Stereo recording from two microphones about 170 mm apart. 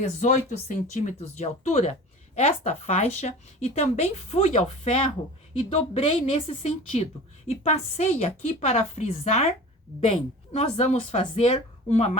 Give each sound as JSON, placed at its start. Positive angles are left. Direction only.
{"t": 0.0, "sound": "speech", "side_deg": 45}